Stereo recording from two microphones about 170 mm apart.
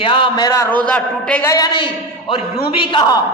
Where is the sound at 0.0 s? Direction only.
30° left (ahead or behind).